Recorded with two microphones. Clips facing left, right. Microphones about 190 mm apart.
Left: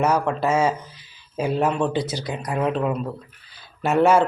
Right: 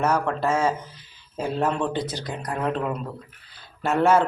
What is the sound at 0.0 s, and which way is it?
Speech, 10° left (ahead or behind).